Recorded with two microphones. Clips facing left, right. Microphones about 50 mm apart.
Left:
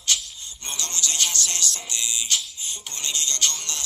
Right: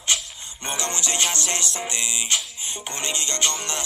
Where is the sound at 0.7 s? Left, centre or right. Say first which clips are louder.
Right 4 dB; right.